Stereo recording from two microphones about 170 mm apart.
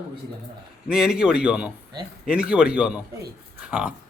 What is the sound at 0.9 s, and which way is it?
Speech, 5° right (ahead or behind).